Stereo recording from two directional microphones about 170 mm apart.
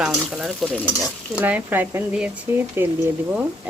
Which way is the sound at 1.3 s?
10° right (ahead or behind).